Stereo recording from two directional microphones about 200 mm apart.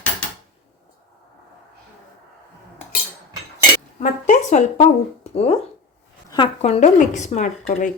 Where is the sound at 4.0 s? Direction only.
35° left (ahead or behind).